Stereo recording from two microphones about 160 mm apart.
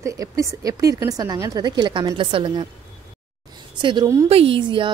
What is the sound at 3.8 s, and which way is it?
Speech, 30° right (ahead or behind).